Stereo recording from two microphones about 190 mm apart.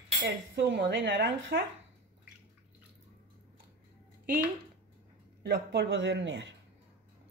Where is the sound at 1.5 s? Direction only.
55° right (ahead or behind).